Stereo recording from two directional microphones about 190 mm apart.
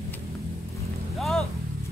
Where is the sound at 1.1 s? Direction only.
Centre (ahead or behind).